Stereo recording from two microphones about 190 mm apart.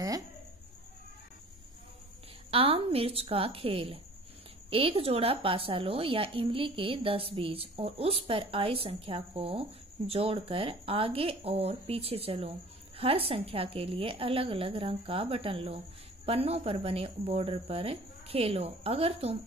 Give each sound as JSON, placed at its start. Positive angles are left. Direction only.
{"t": 2.5, "sound": "a woman's voice", "side_deg": -30}